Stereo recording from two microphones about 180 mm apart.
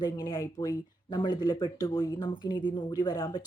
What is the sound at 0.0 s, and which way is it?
Speech, 20° left (ahead or behind).